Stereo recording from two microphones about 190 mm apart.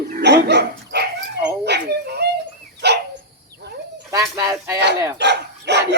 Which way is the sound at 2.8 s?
60° right (ahead or behind).